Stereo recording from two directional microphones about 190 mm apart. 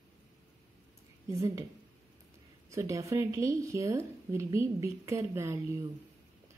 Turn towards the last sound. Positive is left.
turn(degrees=-15)  # may be behind; listen again after turning